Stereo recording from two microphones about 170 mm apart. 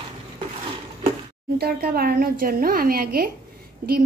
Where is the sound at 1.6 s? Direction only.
65° right (ahead or behind).